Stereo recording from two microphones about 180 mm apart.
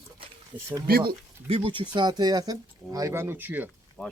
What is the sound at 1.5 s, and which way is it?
Speech, 30° right (ahead or behind).